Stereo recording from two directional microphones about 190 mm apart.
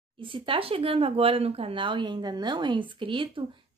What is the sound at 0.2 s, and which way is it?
Speech, 25° right (ahead or behind).